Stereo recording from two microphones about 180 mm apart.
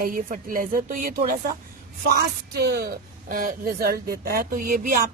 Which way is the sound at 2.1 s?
60° right (ahead or behind).